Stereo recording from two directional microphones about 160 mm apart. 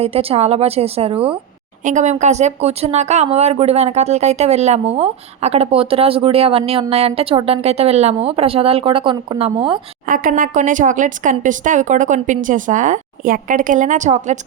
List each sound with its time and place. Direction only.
0.0 s speech: 35° right (ahead or behind)
1.8 s speech: 50° right (ahead or behind); by 9.8 s 30° right (ahead or behind)
10.1 s speech: 60° right (ahead or behind)